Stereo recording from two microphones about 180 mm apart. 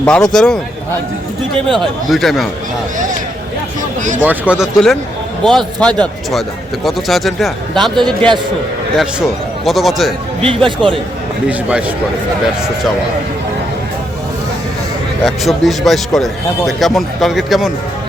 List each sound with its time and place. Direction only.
0.0 s a man's voice: 5° left (ahead or behind)
1.8 s a man's voice: centre (ahead or behind)
4.2 s a man's voice: 10° right (ahead or behind)
10.4 s speech: 30° right (ahead or behind)
15.2 s a man's voice: centre (ahead or behind)